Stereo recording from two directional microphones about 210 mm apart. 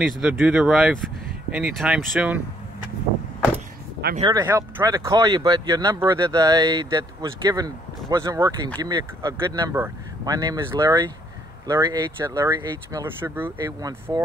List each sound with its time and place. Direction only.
0.2 s speech: 5° right (ahead or behind)
4.2 s speech: 20° right (ahead or behind)